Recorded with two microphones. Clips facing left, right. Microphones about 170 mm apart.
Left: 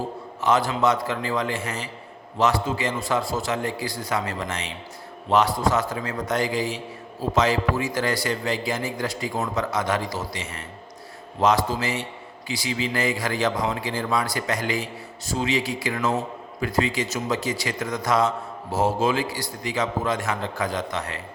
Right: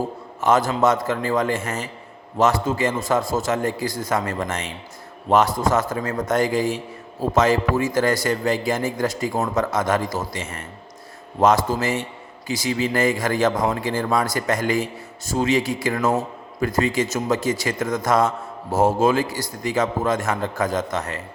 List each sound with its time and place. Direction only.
0.4 s a man's voice: 45° right (ahead or behind)